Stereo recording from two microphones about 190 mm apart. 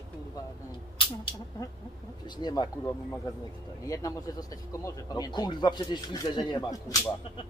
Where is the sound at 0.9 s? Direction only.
25° left (ahead or behind).